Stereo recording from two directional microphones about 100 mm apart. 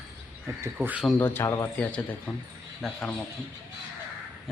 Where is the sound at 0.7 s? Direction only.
10° right (ahead or behind).